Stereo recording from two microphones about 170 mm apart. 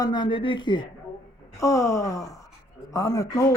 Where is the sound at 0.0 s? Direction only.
25° left (ahead or behind).